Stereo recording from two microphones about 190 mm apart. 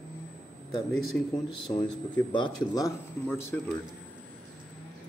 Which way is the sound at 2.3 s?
20° left (ahead or behind).